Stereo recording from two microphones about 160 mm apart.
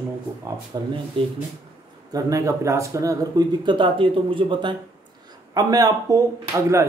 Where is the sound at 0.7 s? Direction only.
30° right (ahead or behind).